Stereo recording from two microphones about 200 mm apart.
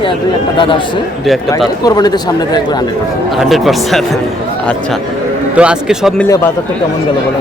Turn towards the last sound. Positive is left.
turn(degrees=15)  # may be behind; listen again after turning